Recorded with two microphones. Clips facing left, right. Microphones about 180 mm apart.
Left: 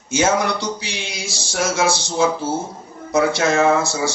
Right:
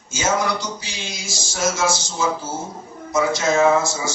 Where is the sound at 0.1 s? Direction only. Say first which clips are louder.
Left 3 dB; 65° left (ahead or behind).